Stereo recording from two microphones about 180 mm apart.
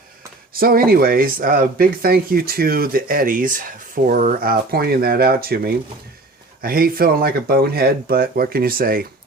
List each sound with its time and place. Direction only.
0.5 s speech: 55° right (ahead or behind)